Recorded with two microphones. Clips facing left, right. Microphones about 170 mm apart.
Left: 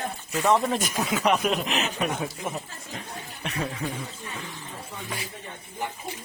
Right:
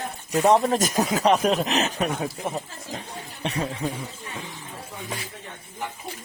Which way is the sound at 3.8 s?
15° right (ahead or behind).